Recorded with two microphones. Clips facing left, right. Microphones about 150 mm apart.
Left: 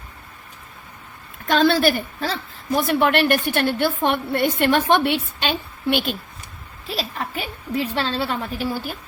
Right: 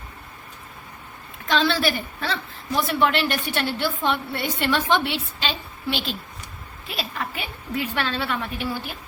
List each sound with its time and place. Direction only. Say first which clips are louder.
1.5 s a woman's voice: left 5 dB; 50° left (ahead or behind)
6.8 s a woman's voice: left 3 dB; 35° left (ahead or behind)